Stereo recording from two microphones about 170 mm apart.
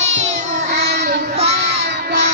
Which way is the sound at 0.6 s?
75° right (ahead or behind).